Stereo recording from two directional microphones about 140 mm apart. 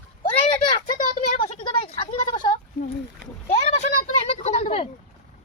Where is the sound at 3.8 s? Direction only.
50° left (ahead or behind).